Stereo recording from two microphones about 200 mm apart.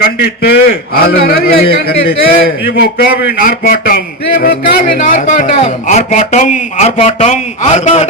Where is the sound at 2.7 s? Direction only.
50° left (ahead or behind).